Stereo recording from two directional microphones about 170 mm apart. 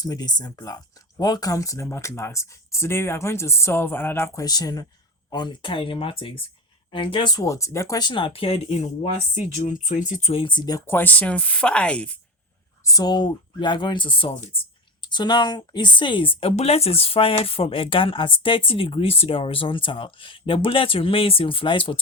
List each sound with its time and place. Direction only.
0.0 s speech: 25° left (ahead or behind); by 8.9 s 40° left (ahead or behind)
9.9 s speech: 50° left (ahead or behind); by 12.2 s 5° left (ahead or behind)
12.8 s speech: 20° left (ahead or behind)